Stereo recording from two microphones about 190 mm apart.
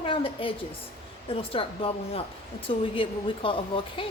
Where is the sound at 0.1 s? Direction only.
30° left (ahead or behind).